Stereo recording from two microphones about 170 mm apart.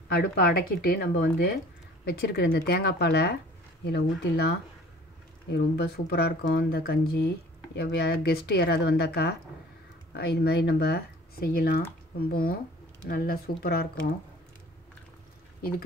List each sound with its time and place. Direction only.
0.1 s speech: 65° left (ahead or behind)